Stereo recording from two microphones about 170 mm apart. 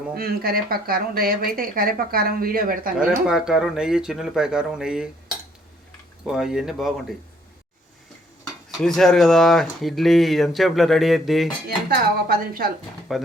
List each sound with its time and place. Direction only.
0.2 s a woman's voice: 65° right (ahead or behind)
2.9 s speech: 5° right (ahead or behind)
6.2 s speech: 5° right (ahead or behind)
8.8 s speech: centre (ahead or behind)
11.9 s a woman's voice: 60° right (ahead or behind)
13.1 s speech: centre (ahead or behind)